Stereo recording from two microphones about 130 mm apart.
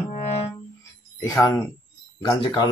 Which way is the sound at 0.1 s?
55° left (ahead or behind).